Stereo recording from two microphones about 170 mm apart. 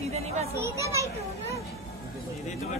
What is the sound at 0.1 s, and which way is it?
Children playing, 40° right (ahead or behind).